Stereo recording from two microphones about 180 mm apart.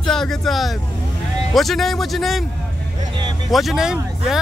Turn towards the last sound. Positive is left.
turn(degrees=-5)  # may be behind; listen again after turning